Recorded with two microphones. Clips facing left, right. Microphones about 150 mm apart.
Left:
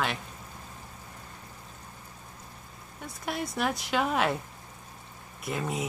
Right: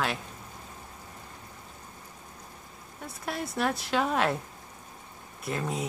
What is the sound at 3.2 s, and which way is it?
Speech, centre (ahead or behind).